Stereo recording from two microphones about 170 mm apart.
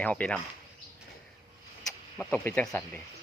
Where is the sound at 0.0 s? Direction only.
10° left (ahead or behind).